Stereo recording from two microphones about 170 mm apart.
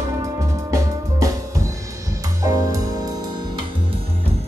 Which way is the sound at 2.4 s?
20° right (ahead or behind).